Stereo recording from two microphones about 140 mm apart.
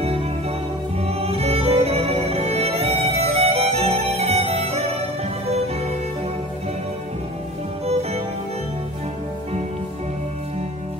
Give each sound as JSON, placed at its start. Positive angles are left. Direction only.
{"t": 0.0, "sound": "music", "side_deg": -45}